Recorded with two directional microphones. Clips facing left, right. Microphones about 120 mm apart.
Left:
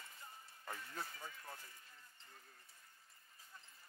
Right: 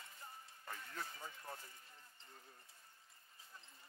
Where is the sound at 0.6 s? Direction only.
20° left (ahead or behind).